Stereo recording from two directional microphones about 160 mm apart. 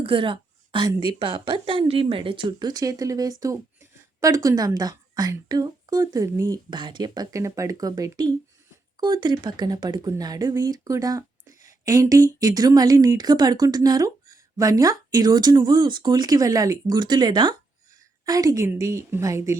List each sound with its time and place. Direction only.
0.0 s a woman's voice: 35° right (ahead or behind)